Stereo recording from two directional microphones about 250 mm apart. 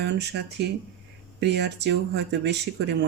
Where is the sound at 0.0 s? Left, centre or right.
Right.